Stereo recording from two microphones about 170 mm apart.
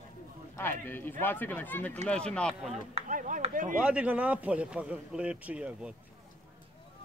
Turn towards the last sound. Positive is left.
turn(degrees=-5)  # may be behind; listen again after turning